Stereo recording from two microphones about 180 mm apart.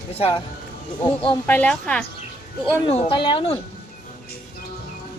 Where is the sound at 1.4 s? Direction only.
10° left (ahead or behind).